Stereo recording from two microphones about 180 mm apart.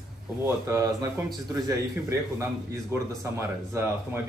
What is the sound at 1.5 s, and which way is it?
Speech, 15° right (ahead or behind).